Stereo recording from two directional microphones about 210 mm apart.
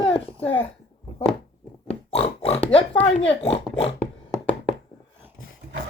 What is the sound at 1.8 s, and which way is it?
Pig, 30° left (ahead or behind).